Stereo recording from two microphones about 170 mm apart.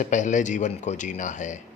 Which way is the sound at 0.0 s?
45° left (ahead or behind).